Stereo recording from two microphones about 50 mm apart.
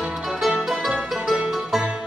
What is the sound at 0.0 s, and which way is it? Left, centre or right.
Music, centre.